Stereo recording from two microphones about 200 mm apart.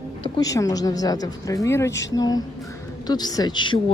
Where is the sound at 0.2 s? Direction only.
20° left (ahead or behind).